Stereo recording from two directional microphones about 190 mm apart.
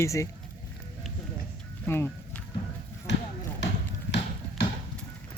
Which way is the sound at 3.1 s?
65° left (ahead or behind).